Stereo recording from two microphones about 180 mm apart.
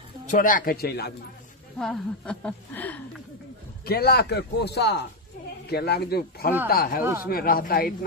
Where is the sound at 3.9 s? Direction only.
60° left (ahead or behind).